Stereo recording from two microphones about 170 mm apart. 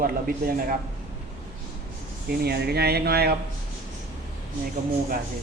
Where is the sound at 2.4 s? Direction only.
70° right (ahead or behind).